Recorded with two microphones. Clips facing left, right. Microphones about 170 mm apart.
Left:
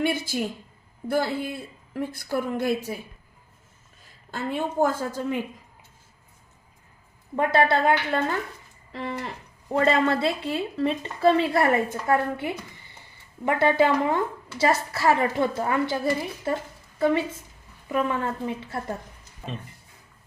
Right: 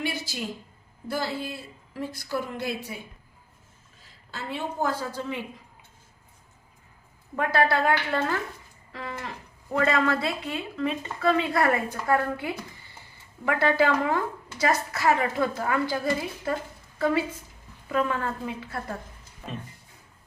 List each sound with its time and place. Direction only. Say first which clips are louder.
0.0 s a woman's voice: left 6 dB; 55° left (ahead or behind)
4.3 s a woman's voice: left 5 dB; 50° left (ahead or behind)
7.3 s a woman's voice: left 3 dB; 25° left (ahead or behind)